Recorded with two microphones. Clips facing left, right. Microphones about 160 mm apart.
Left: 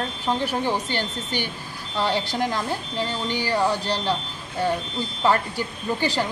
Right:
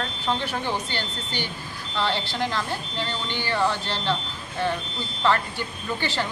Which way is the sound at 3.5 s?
40° left (ahead or behind).